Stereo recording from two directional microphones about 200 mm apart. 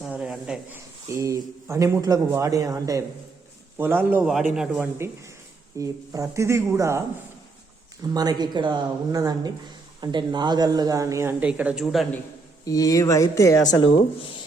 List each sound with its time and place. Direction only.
0.0 s a sound: 5° right (ahead or behind)
1.0 s a man's voice: 15° right (ahead or behind)
8.0 s a man's voice: 20° right (ahead or behind); by 12.2 s centre (ahead or behind)
12.6 s speech: 15° left (ahead or behind)